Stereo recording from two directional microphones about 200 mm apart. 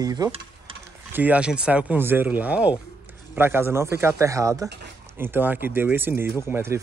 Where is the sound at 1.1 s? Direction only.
5° right (ahead or behind).